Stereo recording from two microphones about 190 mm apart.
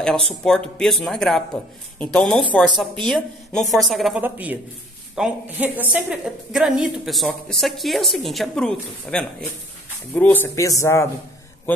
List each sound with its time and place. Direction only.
0.3 s a woman's voice: 5° left (ahead or behind)